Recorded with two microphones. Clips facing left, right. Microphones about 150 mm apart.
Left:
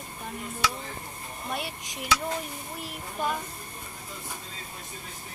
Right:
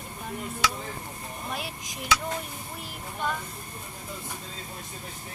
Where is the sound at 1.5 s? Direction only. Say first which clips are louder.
Left 3 dB; centre (ahead or behind).